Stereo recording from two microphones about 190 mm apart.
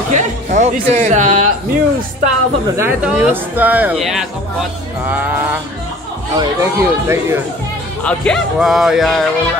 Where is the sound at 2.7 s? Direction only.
10° right (ahead or behind).